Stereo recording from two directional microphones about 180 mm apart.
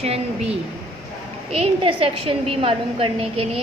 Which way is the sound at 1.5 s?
30° right (ahead or behind).